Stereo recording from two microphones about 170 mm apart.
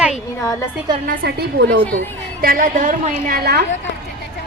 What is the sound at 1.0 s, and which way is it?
Speech, 70° right (ahead or behind).